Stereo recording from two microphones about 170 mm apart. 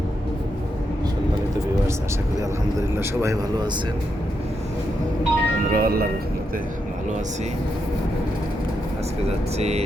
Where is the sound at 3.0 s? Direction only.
15° right (ahead or behind).